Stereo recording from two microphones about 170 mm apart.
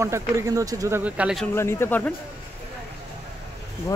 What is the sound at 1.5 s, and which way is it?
Speech, 15° left (ahead or behind).